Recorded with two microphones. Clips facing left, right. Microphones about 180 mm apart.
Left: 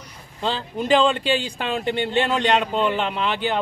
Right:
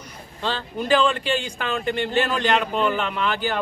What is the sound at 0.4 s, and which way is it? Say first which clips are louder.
Speech: left 2 dB; 25° left (ahead or behind).